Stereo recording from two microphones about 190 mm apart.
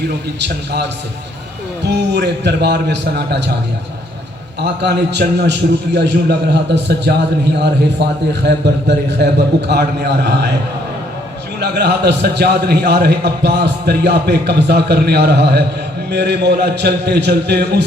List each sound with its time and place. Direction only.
0.3 s a man's voice: 65° right (ahead or behind)
4.6 s a man's voice: 60° right (ahead or behind)
11.6 s a man's voice: 60° right (ahead or behind)